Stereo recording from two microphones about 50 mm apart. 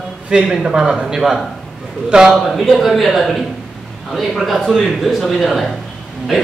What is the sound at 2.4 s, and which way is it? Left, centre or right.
A man's voice, centre.